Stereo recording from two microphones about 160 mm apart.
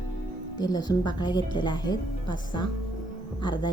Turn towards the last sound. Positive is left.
turn(degrees=30)  # may be behind; listen again after turning